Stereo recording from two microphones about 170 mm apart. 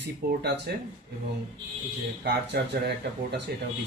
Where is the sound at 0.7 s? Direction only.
70° right (ahead or behind).